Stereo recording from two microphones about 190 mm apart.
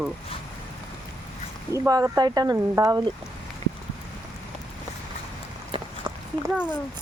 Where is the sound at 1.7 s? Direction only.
15° right (ahead or behind).